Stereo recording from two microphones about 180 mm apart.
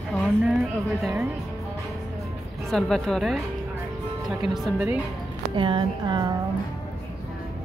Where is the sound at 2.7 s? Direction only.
Centre (ahead or behind).